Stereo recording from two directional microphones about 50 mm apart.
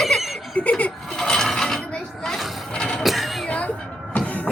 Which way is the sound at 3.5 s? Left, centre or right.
Left.